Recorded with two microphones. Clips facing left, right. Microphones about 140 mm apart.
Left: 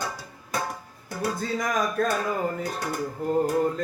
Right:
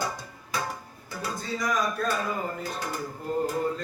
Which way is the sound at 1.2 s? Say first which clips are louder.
Left 4 dB; 55° left (ahead or behind).